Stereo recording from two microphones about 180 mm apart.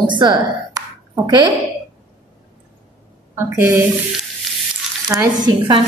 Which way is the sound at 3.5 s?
15° right (ahead or behind).